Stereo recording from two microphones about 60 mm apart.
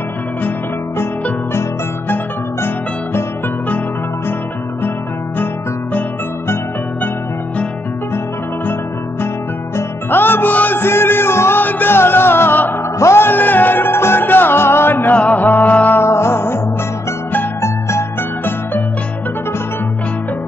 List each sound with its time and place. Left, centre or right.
9.8 s music: left
15.1 s music: left
16.0 s music: left
17.6 s music: left